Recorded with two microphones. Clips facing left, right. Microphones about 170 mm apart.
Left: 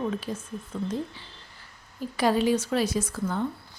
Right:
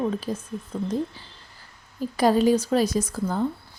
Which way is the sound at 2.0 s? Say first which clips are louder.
Right 4 dB; 40° right (ahead or behind).